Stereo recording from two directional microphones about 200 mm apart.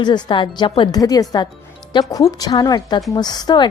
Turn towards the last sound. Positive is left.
turn(degrees=20)  # may be behind; listen again after turning